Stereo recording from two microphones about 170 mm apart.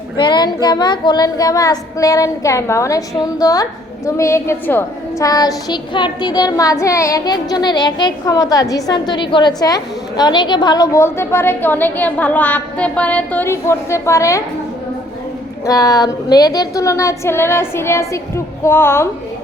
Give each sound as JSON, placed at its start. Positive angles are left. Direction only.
{"t": 0.2, "sound": "speech", "side_deg": 25}
{"t": 15.6, "sound": "a woman's voice", "side_deg": 20}